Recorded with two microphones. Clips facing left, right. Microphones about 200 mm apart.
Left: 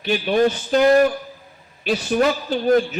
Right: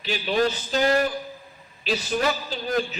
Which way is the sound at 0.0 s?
55° left (ahead or behind).